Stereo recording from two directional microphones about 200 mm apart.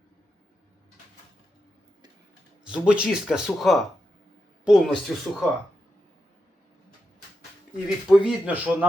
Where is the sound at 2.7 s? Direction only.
5° right (ahead or behind).